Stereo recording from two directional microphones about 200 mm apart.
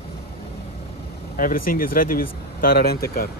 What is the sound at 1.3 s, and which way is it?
Speech, 45° left (ahead or behind).